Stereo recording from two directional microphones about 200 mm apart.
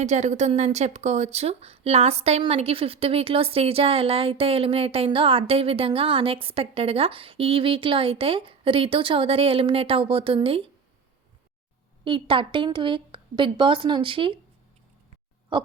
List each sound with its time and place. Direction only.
0.0 s a woman's voice: 35° right (ahead or behind)
12.0 s a woman's voice: 25° right (ahead or behind)